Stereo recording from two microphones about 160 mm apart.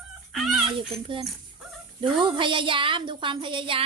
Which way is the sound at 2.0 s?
30° right (ahead or behind).